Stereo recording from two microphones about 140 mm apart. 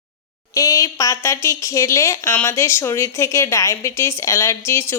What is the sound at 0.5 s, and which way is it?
A woman's voice, 25° left (ahead or behind).